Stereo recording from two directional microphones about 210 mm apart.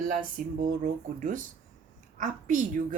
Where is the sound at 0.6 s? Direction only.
40° right (ahead or behind).